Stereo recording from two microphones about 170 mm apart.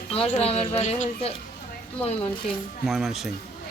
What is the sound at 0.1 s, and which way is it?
Speech, 35° left (ahead or behind).